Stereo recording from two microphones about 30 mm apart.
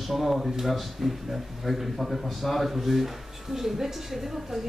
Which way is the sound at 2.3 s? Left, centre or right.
Centre.